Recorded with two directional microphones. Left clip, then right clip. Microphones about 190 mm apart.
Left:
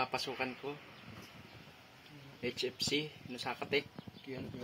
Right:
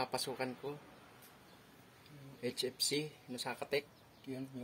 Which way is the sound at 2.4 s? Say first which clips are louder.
Left 1 dB; centre (ahead or behind).